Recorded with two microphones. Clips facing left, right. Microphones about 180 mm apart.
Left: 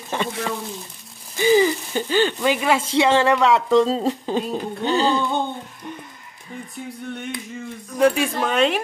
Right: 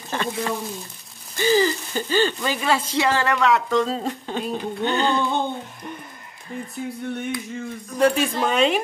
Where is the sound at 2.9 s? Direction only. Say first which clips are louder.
Left 5 dB; 25° left (ahead or behind).